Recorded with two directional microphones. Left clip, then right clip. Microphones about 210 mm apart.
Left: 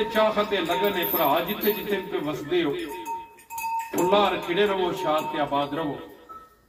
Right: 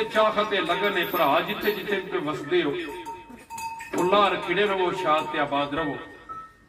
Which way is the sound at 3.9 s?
Centre (ahead or behind).